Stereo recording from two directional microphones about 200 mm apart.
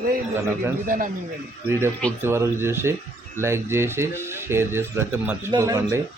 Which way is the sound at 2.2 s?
10° right (ahead or behind).